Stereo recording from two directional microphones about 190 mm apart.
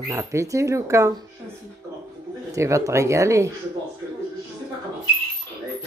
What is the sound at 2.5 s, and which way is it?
Speech, 15° right (ahead or behind).